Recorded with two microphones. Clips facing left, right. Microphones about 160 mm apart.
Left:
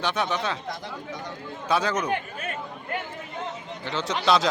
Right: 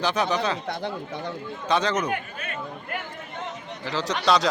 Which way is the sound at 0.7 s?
65° right (ahead or behind).